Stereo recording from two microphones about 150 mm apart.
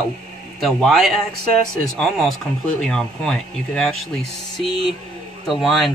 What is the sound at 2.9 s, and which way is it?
Speech, 5° left (ahead or behind).